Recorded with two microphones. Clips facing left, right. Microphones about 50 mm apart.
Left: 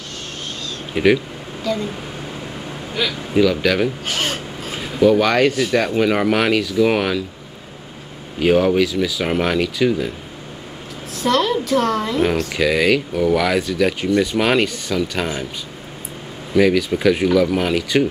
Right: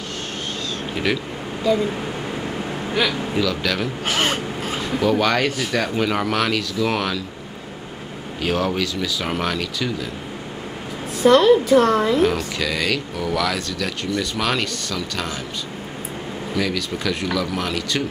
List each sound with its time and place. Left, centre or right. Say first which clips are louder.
0.9 s speech: left 8 dB; centre
3.3 s speech: left 9 dB; centre
8.4 s speech: left 7 dB; centre
11.1 s a woman's voice: right 5 dB; centre
12.5 s speech: left 6 dB; centre
16.5 s speech: left 9 dB; centre